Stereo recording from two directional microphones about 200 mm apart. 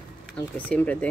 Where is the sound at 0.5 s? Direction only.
5° left (ahead or behind).